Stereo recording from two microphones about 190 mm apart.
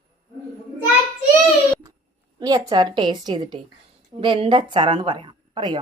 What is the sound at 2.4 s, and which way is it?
A woman's voice, 20° right (ahead or behind).